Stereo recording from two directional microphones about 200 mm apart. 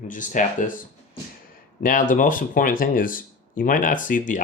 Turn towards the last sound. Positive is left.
turn(degrees=40)  # may be behind; listen again after turning